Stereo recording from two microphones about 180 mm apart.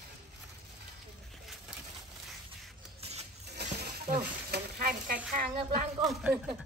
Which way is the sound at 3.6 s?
65° right (ahead or behind).